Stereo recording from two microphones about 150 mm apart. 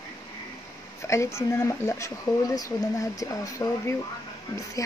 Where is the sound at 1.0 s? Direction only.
20° left (ahead or behind).